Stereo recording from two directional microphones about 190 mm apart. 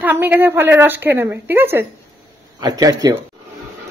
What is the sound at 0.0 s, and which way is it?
A woman's voice, 10° right (ahead or behind).